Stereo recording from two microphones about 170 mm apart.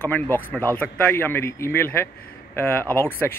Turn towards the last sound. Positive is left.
turn(degrees=10)  # may be behind; listen again after turning